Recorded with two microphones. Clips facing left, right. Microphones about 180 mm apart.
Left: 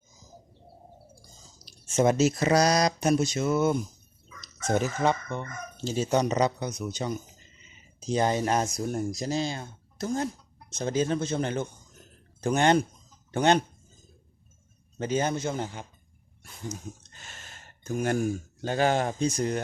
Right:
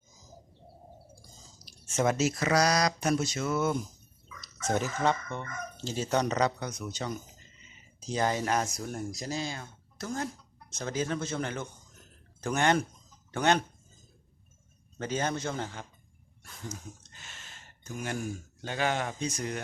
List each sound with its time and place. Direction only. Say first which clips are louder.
2.1 s speech: left 4 dB; 30° left (ahead or behind)
14.9 s speech: left 4 dB; 15° left (ahead or behind)
17.1 s speech: left 3 dB; 45° left (ahead or behind)